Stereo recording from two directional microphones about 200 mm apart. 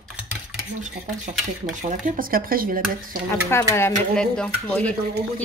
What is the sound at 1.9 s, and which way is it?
Speech, 45° right (ahead or behind).